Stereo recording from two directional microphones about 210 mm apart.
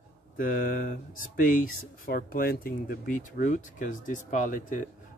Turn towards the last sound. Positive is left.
turn(degrees=40)  # may be behind; listen again after turning